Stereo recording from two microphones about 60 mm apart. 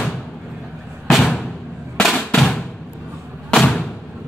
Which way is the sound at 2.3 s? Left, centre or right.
Centre.